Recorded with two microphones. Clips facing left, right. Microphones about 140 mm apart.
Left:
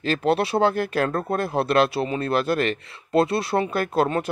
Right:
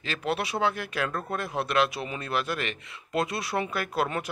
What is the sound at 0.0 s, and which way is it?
Speech, 35° left (ahead or behind).